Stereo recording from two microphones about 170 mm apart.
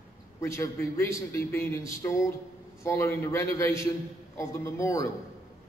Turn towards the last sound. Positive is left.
turn(degrees=20)  # may be behind; listen again after turning